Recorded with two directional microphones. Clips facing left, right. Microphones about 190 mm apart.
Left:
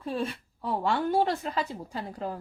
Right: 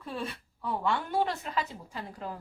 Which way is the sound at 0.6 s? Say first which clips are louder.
Left 3 dB; 35° left (ahead or behind).